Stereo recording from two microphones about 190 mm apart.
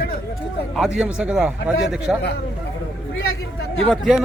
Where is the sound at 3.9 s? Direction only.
5° right (ahead or behind).